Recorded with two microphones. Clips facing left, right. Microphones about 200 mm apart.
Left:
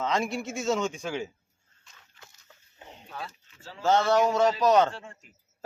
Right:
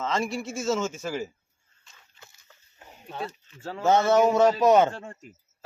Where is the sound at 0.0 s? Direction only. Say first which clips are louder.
Even; centre (ahead or behind).